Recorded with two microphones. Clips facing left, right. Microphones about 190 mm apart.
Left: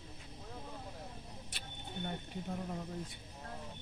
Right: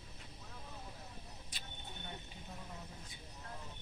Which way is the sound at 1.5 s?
55° left (ahead or behind).